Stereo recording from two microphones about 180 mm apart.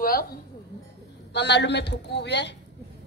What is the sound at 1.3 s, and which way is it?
A man's voice, 70° left (ahead or behind).